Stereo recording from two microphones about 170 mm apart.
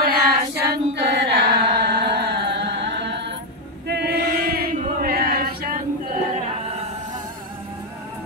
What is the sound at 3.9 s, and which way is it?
Choir, 70° right (ahead or behind).